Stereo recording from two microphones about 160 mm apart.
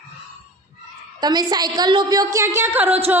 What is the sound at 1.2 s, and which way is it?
A woman's voice, 25° right (ahead or behind).